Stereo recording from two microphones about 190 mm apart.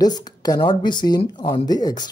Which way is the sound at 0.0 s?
20° left (ahead or behind).